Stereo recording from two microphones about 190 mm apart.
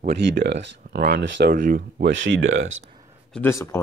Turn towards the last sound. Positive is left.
turn(degrees=15)  # may be behind; listen again after turning